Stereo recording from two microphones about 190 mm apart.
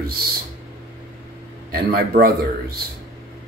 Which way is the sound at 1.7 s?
50° right (ahead or behind).